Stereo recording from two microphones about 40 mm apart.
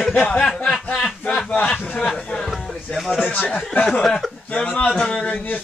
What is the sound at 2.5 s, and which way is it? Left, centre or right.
Music, centre.